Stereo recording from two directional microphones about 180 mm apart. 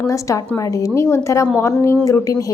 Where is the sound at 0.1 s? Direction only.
15° left (ahead or behind).